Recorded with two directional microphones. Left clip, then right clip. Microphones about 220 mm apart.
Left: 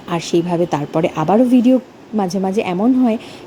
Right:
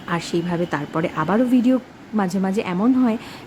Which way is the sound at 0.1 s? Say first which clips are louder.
Left 6 dB; 10° left (ahead or behind).